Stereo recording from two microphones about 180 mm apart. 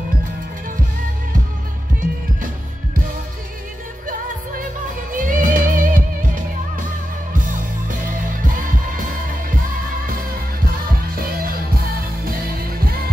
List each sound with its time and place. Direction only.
5.1 s music: 45° right (ahead or behind)
10.6 s music: 55° right (ahead or behind)